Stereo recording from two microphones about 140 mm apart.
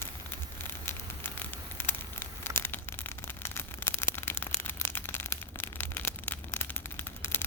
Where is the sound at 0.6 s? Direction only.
15° left (ahead or behind).